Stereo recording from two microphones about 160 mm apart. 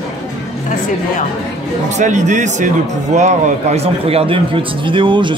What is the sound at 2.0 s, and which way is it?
A man's voice, 50° right (ahead or behind).